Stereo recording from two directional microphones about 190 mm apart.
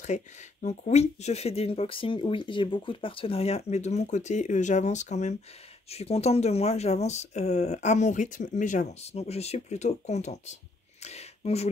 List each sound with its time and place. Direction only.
0.0 s speech: 40° left (ahead or behind)